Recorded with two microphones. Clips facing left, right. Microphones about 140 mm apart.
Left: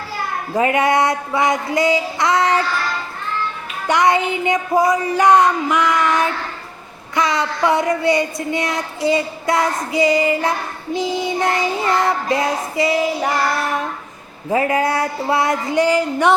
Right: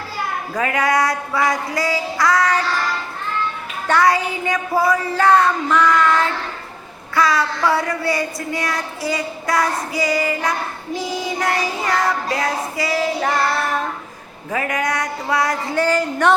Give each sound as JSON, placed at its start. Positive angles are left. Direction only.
{"t": 0.5, "sound": "child singing", "side_deg": 25}
{"t": 3.8, "sound": "speech", "side_deg": 20}
{"t": 7.2, "sound": "child singing", "side_deg": 20}
{"t": 14.5, "sound": "child singing", "side_deg": 25}
{"t": 15.7, "sound": "speech", "side_deg": 15}